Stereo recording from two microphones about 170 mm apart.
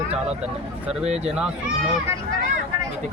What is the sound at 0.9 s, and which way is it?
Speech, 5° right (ahead or behind).